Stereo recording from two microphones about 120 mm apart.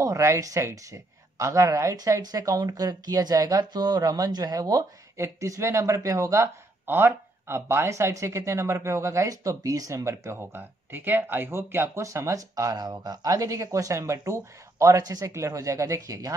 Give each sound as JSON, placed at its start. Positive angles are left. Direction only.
{"t": 0.0, "sound": "speech", "side_deg": -25}